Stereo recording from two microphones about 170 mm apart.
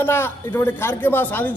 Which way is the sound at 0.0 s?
15° left (ahead or behind).